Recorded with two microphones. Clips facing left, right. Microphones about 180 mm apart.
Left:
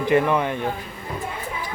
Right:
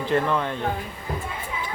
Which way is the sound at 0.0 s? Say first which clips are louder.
Left 4 dB; 15° left (ahead or behind).